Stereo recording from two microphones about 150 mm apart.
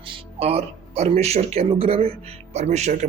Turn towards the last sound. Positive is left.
turn(degrees=-50)  # may be behind; listen again after turning